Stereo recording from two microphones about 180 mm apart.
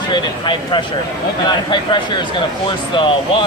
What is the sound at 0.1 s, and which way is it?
Speech, 25° left (ahead or behind).